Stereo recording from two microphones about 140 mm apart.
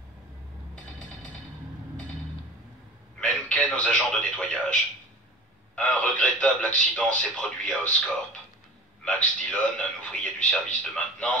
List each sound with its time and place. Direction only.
3.2 s a man's voice: 10° left (ahead or behind)
5.8 s a man's voice: 10° left (ahead or behind)